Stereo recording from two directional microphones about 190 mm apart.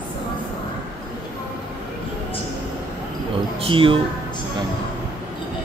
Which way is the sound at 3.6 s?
30° right (ahead or behind).